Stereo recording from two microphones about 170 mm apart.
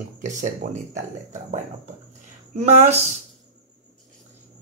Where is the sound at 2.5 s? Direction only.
40° right (ahead or behind).